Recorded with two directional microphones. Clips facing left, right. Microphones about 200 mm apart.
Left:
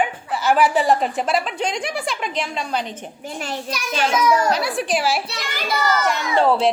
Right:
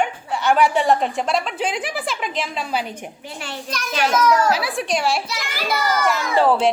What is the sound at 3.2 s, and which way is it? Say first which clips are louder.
Speech: left 8 dB; 40° left (ahead or behind).